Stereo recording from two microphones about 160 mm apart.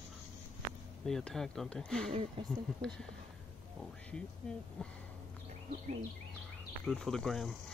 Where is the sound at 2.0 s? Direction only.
40° right (ahead or behind).